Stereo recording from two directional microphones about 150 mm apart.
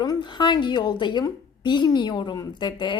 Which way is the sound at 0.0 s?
30° left (ahead or behind).